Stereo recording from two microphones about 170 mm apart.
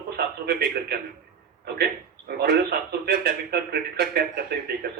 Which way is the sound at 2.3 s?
65° right (ahead or behind).